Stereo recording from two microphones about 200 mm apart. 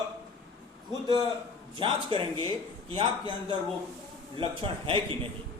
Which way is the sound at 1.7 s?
25° right (ahead or behind).